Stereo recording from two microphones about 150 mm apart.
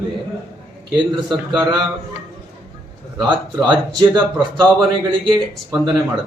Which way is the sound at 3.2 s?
30° right (ahead or behind).